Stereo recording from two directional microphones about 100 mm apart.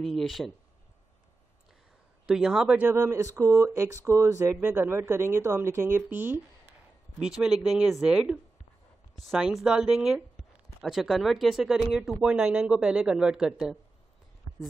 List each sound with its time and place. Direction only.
0.0 s speech: centre (ahead or behind)
2.2 s speech: 5° right (ahead or behind)
2.8 s speech: 25° right (ahead or behind)
7.2 s speech: 5° right (ahead or behind)